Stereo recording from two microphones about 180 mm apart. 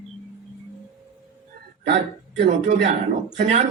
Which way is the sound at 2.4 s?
40° right (ahead or behind).